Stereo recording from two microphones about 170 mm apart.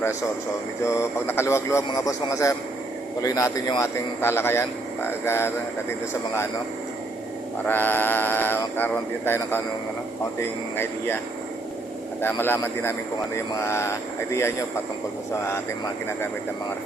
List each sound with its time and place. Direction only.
0.9 s a man's voice: 15° left (ahead or behind)
7.7 s speech: 10° left (ahead or behind)
10.8 s speech: 15° left (ahead or behind)
12.2 s speech: 15° left (ahead or behind)